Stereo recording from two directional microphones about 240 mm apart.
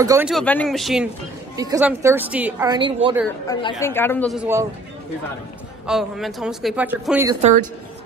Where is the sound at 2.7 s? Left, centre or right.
Centre.